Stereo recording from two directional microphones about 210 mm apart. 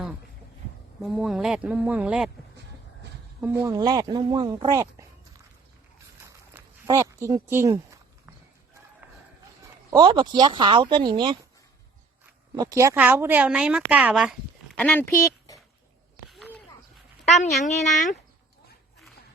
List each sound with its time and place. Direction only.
1.0 s a woman's voice: centre (ahead or behind)
3.4 s speech: 15° right (ahead or behind)
6.8 s speech: 15° right (ahead or behind)
9.9 s speech: 20° right (ahead or behind)
12.5 s a woman's voice: 15° right (ahead or behind); by 15.5 s 10° left (ahead or behind)
17.2 s a woman's voice: 30° left (ahead or behind)